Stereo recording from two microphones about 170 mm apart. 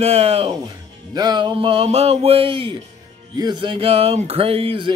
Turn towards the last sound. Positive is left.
turn(degrees=-30)  # may be behind; listen again after turning